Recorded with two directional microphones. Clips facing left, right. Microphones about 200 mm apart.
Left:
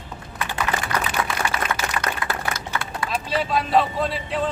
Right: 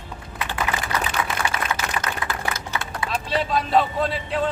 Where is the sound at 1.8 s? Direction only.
45° left (ahead or behind).